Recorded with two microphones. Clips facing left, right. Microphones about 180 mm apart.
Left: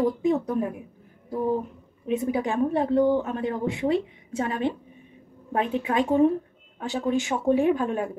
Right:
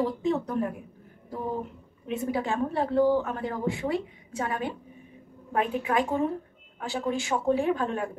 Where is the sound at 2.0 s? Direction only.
15° left (ahead or behind).